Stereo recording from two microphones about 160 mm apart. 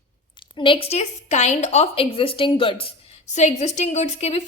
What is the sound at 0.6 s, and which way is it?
A woman's voice, 35° left (ahead or behind).